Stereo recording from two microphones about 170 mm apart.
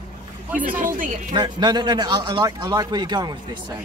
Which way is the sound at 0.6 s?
55° right (ahead or behind).